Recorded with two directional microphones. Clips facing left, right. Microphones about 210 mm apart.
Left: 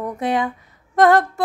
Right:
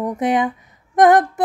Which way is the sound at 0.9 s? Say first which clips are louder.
Right 2 dB; 15° right (ahead or behind).